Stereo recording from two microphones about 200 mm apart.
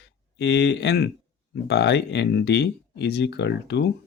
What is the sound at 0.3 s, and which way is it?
Speech, 60° left (ahead or behind).